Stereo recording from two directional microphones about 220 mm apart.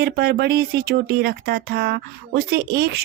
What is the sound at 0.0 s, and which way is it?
A woman's voice, 45° right (ahead or behind).